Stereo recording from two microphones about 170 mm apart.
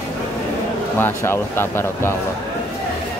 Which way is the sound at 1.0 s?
15° left (ahead or behind).